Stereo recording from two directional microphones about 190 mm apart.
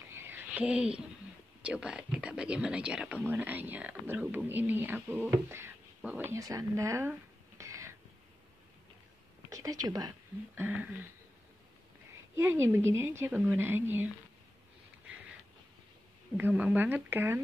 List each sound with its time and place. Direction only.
0.1 s a sound: 10° right (ahead or behind)
1.6 s speech: 5° right (ahead or behind)
9.5 s speech: 20° right (ahead or behind)
12.4 s speech: 15° right (ahead or behind)
16.3 s speech: 10° right (ahead or behind)